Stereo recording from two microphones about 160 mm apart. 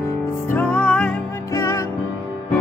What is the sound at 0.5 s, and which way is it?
Music, 10° left (ahead or behind).